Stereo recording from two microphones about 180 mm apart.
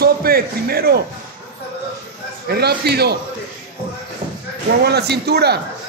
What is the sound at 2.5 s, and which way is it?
Speech, 65° right (ahead or behind).